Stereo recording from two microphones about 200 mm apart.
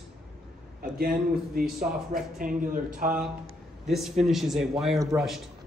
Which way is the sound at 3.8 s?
Centre (ahead or behind).